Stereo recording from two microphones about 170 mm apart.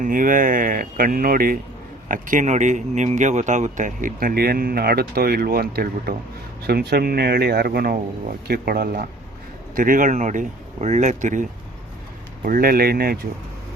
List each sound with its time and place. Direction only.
0.0 s speech: 50° right (ahead or behind)